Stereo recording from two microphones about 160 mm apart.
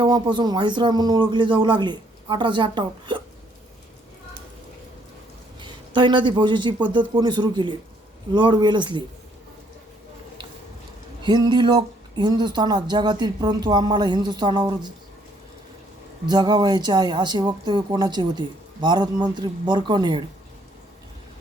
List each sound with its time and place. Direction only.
0.0 s speech: 30° right (ahead or behind)
5.5 s speech: 30° right (ahead or behind)
11.2 s speech: 30° right (ahead or behind)
16.2 s speech: 25° right (ahead or behind)